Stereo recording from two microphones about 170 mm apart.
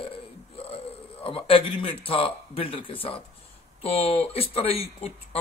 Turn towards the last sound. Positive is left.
turn(degrees=35)  # may be behind; listen again after turning